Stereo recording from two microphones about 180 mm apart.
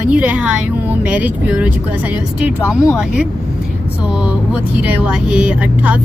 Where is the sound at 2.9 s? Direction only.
5° right (ahead or behind).